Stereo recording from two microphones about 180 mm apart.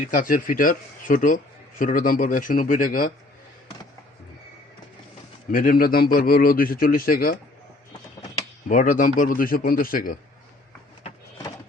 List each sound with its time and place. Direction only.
0.0 s a man's voice: 50° left (ahead or behind)
5.5 s a man's voice: 50° left (ahead or behind)
8.7 s a man's voice: 50° left (ahead or behind)